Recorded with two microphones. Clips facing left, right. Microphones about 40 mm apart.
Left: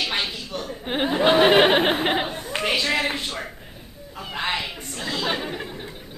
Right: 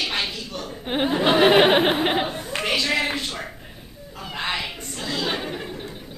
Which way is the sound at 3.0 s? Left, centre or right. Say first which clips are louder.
Even; centre.